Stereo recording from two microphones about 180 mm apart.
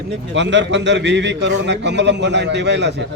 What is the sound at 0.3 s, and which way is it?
A man's voice, 85° right.